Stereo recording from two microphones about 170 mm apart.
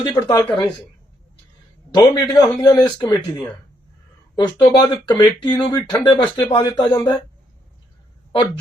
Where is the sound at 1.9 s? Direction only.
20° left (ahead or behind).